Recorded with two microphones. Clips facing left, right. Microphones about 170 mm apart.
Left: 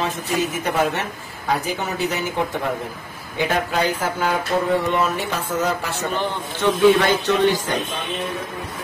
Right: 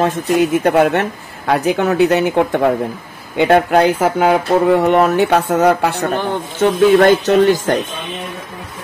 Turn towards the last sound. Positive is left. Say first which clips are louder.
# right 7 dB
turn(degrees=-45)  # may be behind; listen again after turning